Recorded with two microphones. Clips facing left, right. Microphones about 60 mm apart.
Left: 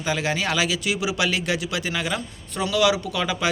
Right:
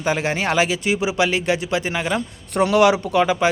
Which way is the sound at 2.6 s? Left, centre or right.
Right.